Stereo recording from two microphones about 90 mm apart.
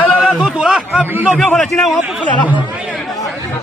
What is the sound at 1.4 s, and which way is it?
Speech, centre (ahead or behind).